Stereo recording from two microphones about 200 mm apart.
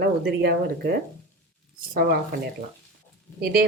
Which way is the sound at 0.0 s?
55° right (ahead or behind).